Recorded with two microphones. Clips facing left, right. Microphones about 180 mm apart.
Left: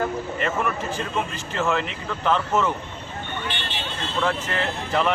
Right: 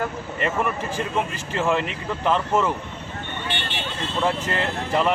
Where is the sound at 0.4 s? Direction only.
10° right (ahead or behind).